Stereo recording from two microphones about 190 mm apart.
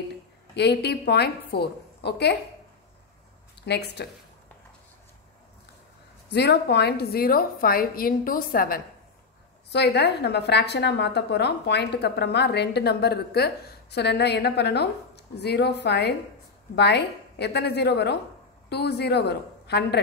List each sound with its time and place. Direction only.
0.6 s a woman's voice: 60° left (ahead or behind)
3.6 s a woman's voice: 60° left (ahead or behind)
6.3 s a woman's voice: 60° left (ahead or behind)
9.7 s a woman's voice: 60° left (ahead or behind)